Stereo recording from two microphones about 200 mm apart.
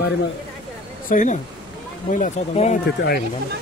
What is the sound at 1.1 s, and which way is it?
Speech, 40° left (ahead or behind).